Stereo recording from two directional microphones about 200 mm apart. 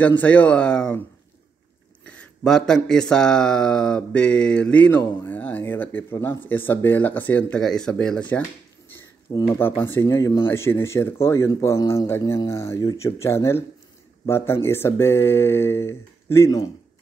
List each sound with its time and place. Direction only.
0.2 s speech: 5° left (ahead or behind)
2.0 s speech: 5° left (ahead or behind)